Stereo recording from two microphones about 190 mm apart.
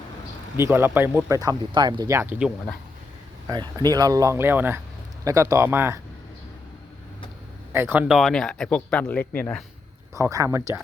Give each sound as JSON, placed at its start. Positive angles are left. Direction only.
{"t": 0.5, "sound": "speech", "side_deg": -15}
{"t": 3.4, "sound": "speech", "side_deg": -20}
{"t": 7.7, "sound": "speech", "side_deg": -10}
{"t": 10.2, "sound": "speech", "side_deg": -15}